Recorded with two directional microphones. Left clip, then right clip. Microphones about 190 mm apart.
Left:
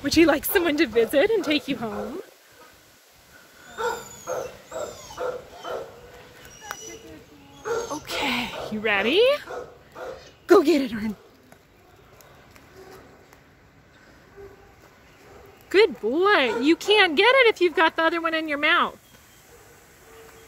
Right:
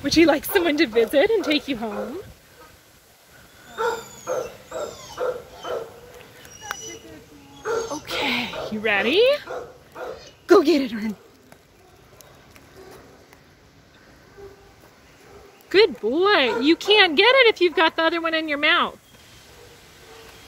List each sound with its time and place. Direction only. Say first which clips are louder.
0.0 s speech: right 2 dB; 5° left (ahead or behind)
3.7 s dog: right 3 dB; 45° right (ahead or behind)
6.7 s a sound: right 4 dB; 10° left (ahead or behind)
7.9 s a sound: right 2 dB; 10° left (ahead or behind)
10.4 s speech: right 1 dB; 10° left (ahead or behind)
15.7 s speech: right 2 dB; 10° left (ahead or behind)